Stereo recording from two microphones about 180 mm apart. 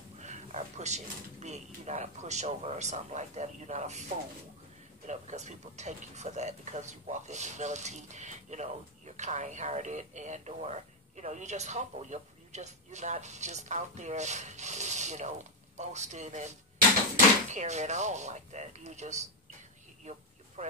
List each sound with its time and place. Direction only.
0.2 s speech: 40° right (ahead or behind)
5.0 s speech: 40° right (ahead or behind)